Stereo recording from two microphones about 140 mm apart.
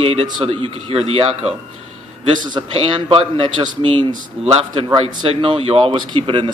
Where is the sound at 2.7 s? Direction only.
35° right (ahead or behind).